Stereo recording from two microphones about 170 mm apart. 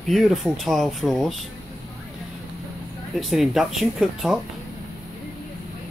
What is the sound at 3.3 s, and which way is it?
Speech, centre (ahead or behind).